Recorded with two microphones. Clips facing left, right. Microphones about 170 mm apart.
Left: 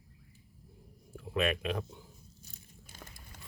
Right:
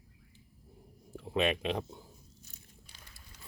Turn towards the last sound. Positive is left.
turn(degrees=45)  # may be behind; listen again after turning